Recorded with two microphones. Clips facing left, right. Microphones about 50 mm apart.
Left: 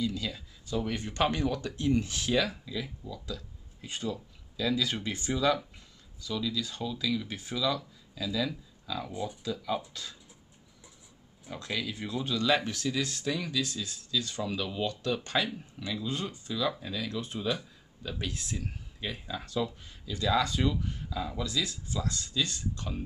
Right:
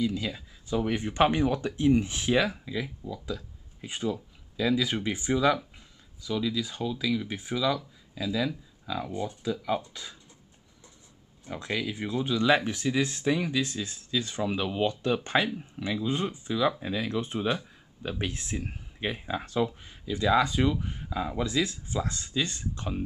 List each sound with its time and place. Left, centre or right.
0.0 s speech: right
9.1 s speech: centre
9.4 s speech: centre
11.5 s speech: centre